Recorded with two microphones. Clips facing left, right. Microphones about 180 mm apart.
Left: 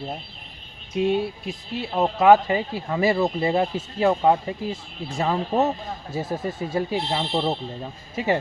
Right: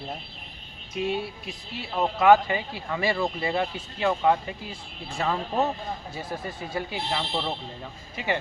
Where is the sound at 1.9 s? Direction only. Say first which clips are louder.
Left 3 dB; 20° left (ahead or behind).